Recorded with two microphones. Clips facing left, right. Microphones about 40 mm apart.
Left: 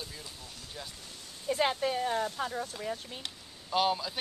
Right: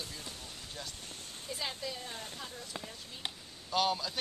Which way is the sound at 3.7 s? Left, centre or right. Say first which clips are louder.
Left 3 dB; centre.